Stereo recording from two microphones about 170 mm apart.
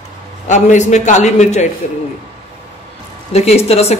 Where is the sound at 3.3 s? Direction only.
40° left (ahead or behind).